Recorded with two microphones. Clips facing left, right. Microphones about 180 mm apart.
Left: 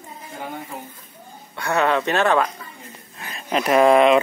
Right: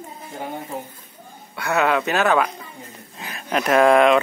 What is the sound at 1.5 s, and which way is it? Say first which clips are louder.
Speech: even; centre (ahead or behind).